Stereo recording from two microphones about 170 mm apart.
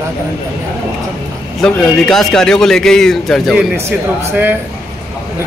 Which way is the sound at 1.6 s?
5° left (ahead or behind).